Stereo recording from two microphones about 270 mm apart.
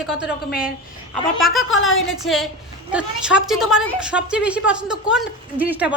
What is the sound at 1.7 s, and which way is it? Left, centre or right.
Speech, left.